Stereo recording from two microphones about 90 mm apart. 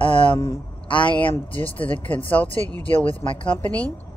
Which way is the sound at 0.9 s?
65° left (ahead or behind).